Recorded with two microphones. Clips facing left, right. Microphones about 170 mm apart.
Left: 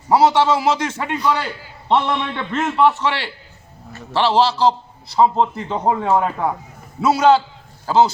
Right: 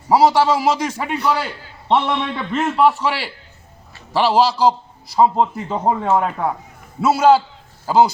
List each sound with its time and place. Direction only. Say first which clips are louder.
0.1 s a man's voice: even; 10° right (ahead or behind)